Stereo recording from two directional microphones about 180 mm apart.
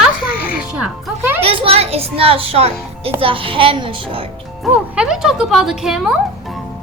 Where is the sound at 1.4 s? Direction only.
30° right (ahead or behind).